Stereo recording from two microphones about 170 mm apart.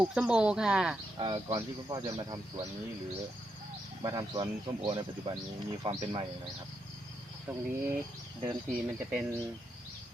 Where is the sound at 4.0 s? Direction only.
25° right (ahead or behind).